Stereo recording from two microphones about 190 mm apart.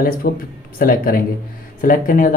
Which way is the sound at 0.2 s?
50° left (ahead or behind).